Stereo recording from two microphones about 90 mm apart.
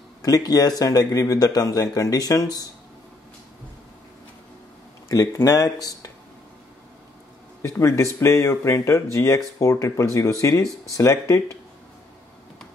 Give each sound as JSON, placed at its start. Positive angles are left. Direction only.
{"t": 0.2, "sound": "speech", "side_deg": 45}
{"t": 5.0, "sound": "speech", "side_deg": 35}
{"t": 7.6, "sound": "speech", "side_deg": 35}